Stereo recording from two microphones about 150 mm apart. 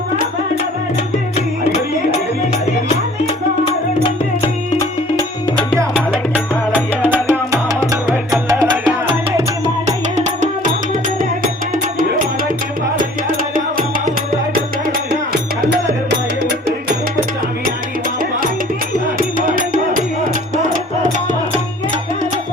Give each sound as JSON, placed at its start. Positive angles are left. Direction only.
{"t": 5.9, "sound": "music", "side_deg": -10}
{"t": 9.6, "sound": "music", "side_deg": -50}
{"t": 15.1, "sound": "music", "side_deg": -90}
{"t": 19.4, "sound": "music", "side_deg": -65}